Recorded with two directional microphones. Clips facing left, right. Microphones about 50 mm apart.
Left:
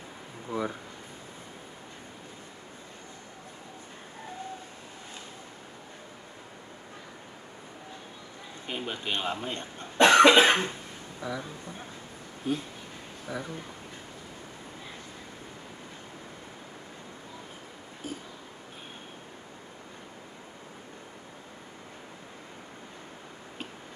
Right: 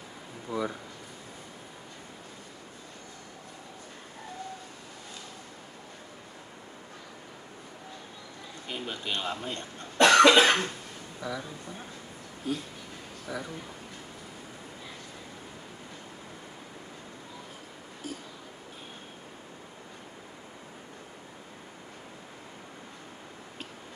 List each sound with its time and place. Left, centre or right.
0.5 s speech: centre
8.6 s speech: centre
12.4 s speech: left
18.0 s a sound: left